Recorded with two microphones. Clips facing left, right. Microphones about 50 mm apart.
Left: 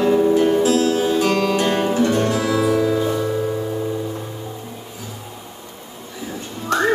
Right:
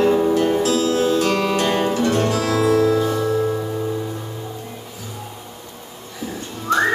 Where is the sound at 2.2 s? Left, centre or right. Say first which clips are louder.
Even; centre.